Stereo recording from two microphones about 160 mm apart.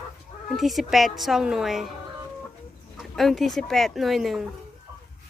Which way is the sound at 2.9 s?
Centre (ahead or behind).